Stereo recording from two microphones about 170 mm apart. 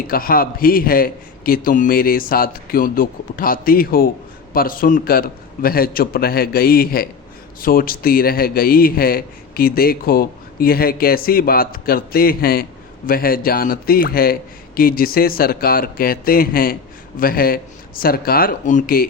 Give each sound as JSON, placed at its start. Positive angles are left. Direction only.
{"t": 0.1, "sound": "a man's voice", "side_deg": 60}